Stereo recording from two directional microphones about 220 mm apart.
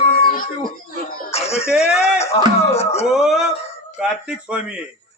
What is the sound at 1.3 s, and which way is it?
Speech, 30° left (ahead or behind).